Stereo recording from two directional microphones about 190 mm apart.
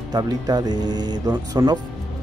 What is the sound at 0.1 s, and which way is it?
Speech, 20° right (ahead or behind).